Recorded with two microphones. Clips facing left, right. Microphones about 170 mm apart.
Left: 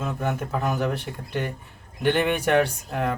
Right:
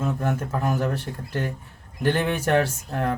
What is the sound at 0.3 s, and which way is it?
Speech, 15° left (ahead or behind).